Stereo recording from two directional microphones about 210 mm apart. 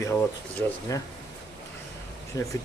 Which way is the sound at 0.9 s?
15° left (ahead or behind).